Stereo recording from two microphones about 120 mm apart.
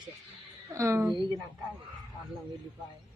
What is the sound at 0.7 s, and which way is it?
Speech, 25° right (ahead or behind).